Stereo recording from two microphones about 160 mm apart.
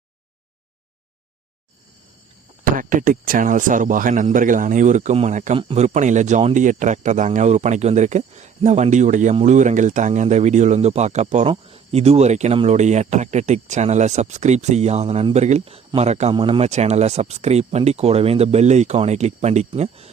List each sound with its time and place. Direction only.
2.7 s speech: 60° right (ahead or behind); by 16.3 s 45° right (ahead or behind)
16.3 s speech: 35° right (ahead or behind)